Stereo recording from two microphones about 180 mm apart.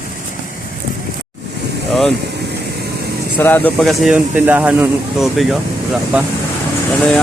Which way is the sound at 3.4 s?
10° left (ahead or behind).